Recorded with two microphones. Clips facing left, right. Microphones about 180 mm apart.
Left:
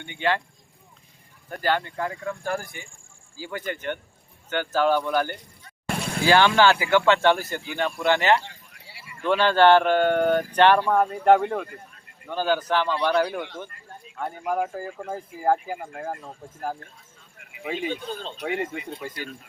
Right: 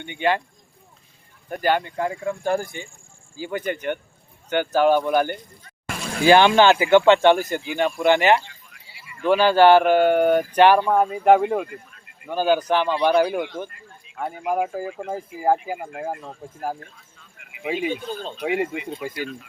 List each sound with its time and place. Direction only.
0.0 s speech: 15° right (ahead or behind)
1.5 s speech: 15° right (ahead or behind)
17.6 s speech: 10° right (ahead or behind)